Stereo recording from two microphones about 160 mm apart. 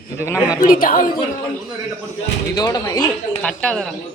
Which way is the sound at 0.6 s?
60° left (ahead or behind).